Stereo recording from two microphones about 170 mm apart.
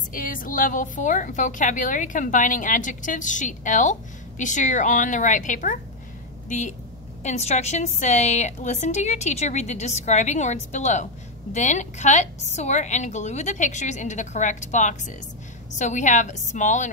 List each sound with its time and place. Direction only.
0.1 s a woman's voice: 55° left (ahead or behind)
7.2 s a woman's voice: 40° left (ahead or behind)